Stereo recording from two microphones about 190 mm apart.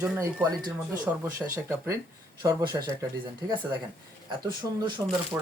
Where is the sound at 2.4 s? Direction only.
20° right (ahead or behind).